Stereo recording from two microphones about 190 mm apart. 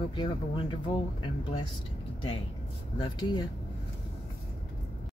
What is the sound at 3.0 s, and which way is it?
Speech, 20° left (ahead or behind).